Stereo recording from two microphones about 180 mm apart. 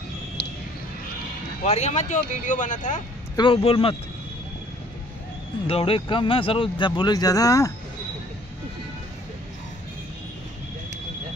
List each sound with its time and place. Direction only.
1.6 s speech: 40° left (ahead or behind)
3.3 s speech: 30° left (ahead or behind)
5.7 s speech: 30° left (ahead or behind)